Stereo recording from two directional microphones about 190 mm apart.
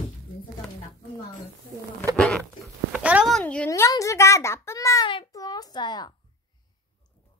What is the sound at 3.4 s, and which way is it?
A child's voice, 10° left (ahead or behind).